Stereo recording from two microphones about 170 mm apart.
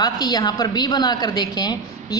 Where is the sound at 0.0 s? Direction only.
25° left (ahead or behind).